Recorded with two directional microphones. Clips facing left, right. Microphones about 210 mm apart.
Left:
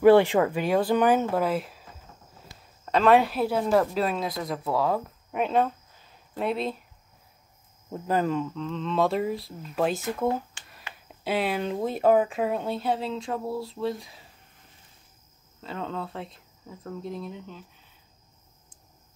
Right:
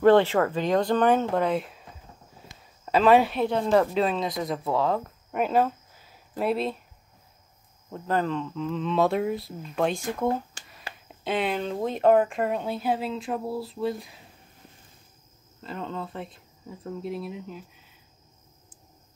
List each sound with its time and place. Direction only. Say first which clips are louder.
0.0 s speech: left 1 dB; 10° left (ahead or behind)
7.9 s speech: left 1 dB; 10° left (ahead or behind)
8.5 s speech: right 2 dB; 5° right (ahead or behind)
10.6 s a sound: right 3 dB; 40° right (ahead or behind)
11.2 s speech: even; 5° left (ahead or behind)
15.6 s speech: left 1 dB; centre (ahead or behind)